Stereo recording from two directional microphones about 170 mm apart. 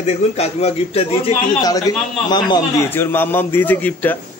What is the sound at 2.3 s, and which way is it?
Speech, 25° left (ahead or behind).